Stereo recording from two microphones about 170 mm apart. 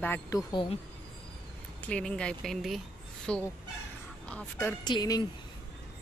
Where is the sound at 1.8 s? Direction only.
5° left (ahead or behind).